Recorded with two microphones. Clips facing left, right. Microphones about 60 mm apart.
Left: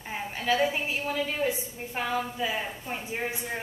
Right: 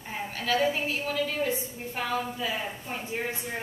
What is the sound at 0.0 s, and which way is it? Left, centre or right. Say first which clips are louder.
A woman's voice: left 1 dB; centre.